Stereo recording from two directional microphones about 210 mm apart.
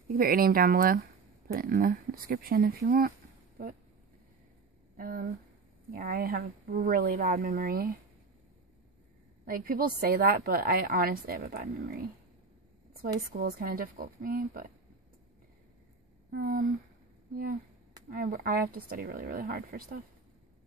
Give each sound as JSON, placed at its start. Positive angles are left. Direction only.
{"t": 0.1, "sound": "a woman's voice", "side_deg": -45}
{"t": 4.9, "sound": "a woman's voice", "side_deg": -40}
{"t": 9.4, "sound": "a woman's voice", "side_deg": -45}
{"t": 13.3, "sound": "a woman's voice", "side_deg": -50}
{"t": 16.3, "sound": "speech", "side_deg": -45}
{"t": 18.3, "sound": "a woman's voice", "side_deg": -45}